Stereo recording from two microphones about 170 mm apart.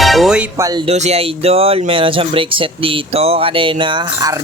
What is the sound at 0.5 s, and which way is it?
Speech, 20° right (ahead or behind).